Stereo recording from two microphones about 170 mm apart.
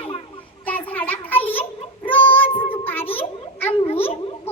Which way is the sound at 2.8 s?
10° left (ahead or behind).